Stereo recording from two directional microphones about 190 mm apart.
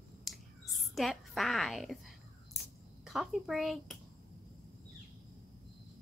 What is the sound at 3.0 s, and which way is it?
Speech, centre (ahead or behind).